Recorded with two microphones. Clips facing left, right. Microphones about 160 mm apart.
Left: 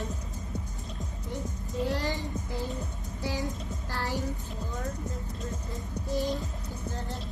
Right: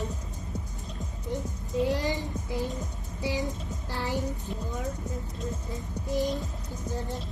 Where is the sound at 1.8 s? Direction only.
15° right (ahead or behind).